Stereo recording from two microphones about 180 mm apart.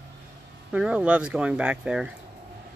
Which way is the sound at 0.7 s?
5° right (ahead or behind).